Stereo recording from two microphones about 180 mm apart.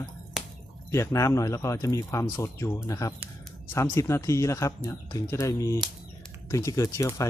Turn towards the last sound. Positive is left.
turn(degrees=15)  # may be behind; listen again after turning